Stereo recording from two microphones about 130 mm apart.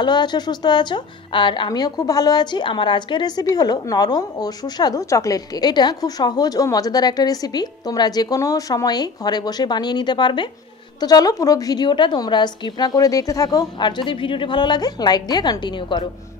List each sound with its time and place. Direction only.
0.0 s a woman's voice: 35° left (ahead or behind)